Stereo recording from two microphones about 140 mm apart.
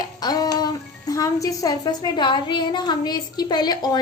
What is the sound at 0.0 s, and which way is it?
A woman's voice, 30° left (ahead or behind).